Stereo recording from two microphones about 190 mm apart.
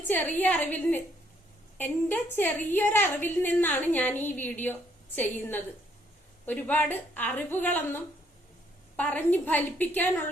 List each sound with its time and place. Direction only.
0.1 s a woman's voice: 10° left (ahead or behind)